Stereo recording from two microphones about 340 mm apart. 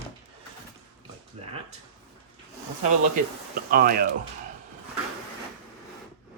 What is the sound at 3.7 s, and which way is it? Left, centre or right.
Speech, right.